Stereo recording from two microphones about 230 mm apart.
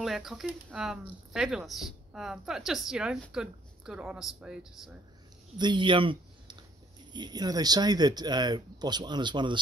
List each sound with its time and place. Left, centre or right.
0.0 s speech: centre
5.6 s speech: centre